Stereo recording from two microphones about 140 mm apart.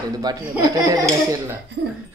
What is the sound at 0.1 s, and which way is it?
Speech, 30° right (ahead or behind).